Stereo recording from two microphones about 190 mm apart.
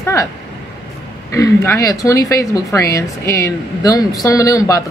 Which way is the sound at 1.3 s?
15° left (ahead or behind).